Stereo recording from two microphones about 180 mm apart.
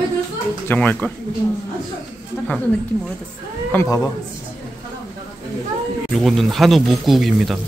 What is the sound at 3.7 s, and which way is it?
Speech, 15° left (ahead or behind).